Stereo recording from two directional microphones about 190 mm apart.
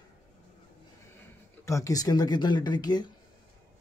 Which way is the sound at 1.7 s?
15° left (ahead or behind).